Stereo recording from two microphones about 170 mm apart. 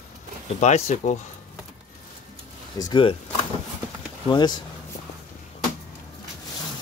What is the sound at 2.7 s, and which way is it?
Speech, 25° left (ahead or behind).